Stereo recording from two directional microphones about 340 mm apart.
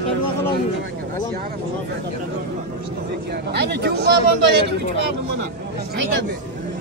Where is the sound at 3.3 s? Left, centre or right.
Right.